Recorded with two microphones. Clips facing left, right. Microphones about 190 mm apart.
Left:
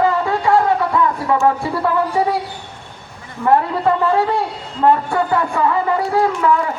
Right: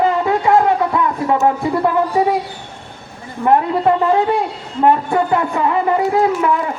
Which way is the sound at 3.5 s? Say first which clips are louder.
Right 1 dB; 20° right (ahead or behind).